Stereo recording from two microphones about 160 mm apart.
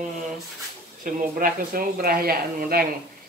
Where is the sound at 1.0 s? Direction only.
65° right (ahead or behind).